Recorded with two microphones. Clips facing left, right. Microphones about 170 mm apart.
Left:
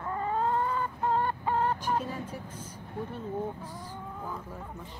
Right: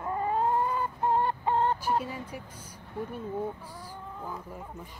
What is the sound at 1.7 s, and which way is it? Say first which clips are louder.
Speech: right 1 dB; 10° right (ahead or behind).